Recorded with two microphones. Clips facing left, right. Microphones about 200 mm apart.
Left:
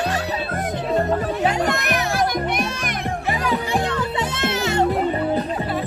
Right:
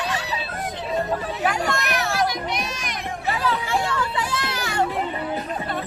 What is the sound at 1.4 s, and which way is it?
Music, 20° left (ahead or behind).